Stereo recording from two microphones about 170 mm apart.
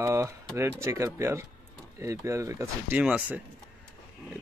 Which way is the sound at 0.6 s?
15° right (ahead or behind).